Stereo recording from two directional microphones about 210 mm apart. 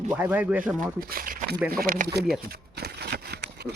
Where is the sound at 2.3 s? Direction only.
45° right (ahead or behind).